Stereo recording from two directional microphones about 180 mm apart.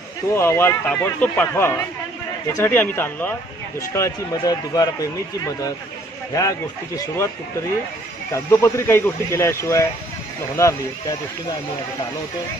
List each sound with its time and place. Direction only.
0.3 s speech: 15° left (ahead or behind)
8.3 s speech: 15° left (ahead or behind)